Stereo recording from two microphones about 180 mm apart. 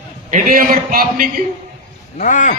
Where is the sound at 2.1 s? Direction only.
45° left (ahead or behind).